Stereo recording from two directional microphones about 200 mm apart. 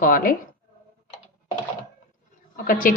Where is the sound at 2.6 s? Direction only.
45° left (ahead or behind).